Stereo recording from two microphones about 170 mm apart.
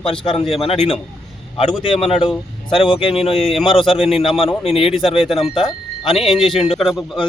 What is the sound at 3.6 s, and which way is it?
Speech, 30° left (ahead or behind).